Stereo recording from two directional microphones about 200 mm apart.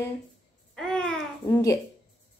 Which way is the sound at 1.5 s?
15° left (ahead or behind).